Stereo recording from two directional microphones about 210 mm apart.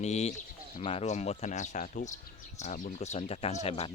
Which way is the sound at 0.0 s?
30° left (ahead or behind).